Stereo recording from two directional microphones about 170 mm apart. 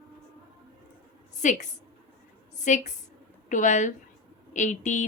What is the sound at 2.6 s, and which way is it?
A woman's voice, 45° left (ahead or behind).